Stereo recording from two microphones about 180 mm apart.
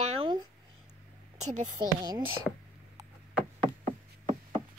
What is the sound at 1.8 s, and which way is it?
Speech, 25° right (ahead or behind).